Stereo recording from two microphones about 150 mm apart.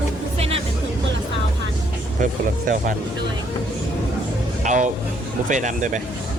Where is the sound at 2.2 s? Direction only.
60° right (ahead or behind).